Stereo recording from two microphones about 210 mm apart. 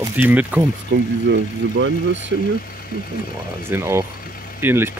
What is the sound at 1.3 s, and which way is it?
Speech, 60° right (ahead or behind).